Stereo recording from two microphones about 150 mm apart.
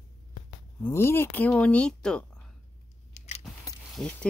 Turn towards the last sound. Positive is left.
turn(degrees=5)  # may be behind; listen again after turning